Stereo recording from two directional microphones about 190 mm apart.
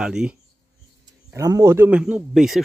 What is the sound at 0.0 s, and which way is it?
Speech, 5° right (ahead or behind).